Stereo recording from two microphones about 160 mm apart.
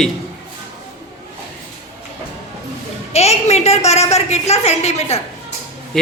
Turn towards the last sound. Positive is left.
turn(degrees=0)  # may be behind; listen again after turning